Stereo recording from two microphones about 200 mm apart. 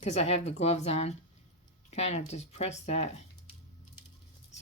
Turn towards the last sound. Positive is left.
turn(degrees=35)  # may be behind; listen again after turning